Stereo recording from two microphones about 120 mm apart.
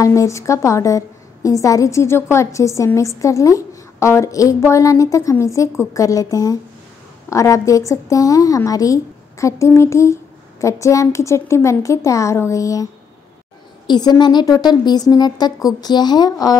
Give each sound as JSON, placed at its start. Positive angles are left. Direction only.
{"t": 0.0, "sound": "a woman's voice", "side_deg": 25}
{"t": 13.8, "sound": "a woman's voice", "side_deg": 35}